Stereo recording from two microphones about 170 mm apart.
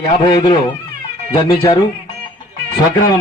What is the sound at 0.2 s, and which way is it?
Speech, 25° left (ahead or behind).